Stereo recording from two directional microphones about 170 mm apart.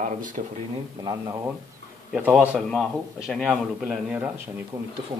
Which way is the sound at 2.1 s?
5° right (ahead or behind).